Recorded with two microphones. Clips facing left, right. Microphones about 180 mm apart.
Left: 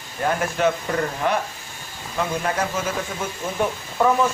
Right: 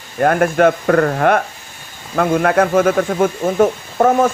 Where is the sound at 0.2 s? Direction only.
60° right (ahead or behind).